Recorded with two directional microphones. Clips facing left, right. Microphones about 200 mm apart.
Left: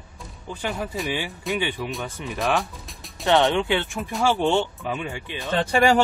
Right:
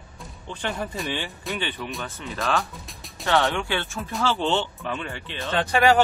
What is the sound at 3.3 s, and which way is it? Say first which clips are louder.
Speech: left 4 dB; 20° left (ahead or behind).